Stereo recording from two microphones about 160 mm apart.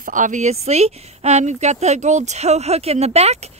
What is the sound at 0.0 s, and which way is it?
Speech, 55° right (ahead or behind).